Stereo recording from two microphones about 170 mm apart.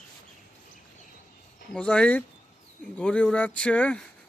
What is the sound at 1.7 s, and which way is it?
Speech, 5° left (ahead or behind).